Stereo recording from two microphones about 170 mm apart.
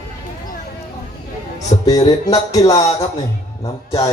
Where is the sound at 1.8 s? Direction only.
25° left (ahead or behind).